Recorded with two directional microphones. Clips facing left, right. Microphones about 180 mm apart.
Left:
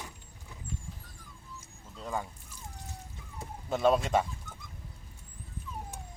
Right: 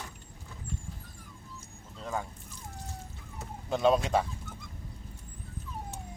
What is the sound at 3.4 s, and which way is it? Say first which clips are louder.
Speech: right 1 dB; 5° left (ahead or behind).